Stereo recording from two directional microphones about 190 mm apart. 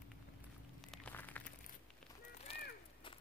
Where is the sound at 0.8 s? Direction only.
5° left (ahead or behind).